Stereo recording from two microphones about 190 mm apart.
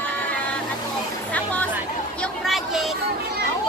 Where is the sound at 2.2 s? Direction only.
Centre (ahead or behind).